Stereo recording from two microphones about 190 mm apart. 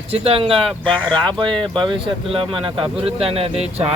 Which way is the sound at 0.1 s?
30° right (ahead or behind).